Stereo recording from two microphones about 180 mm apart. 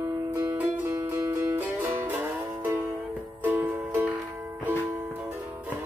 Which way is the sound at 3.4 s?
10° right (ahead or behind).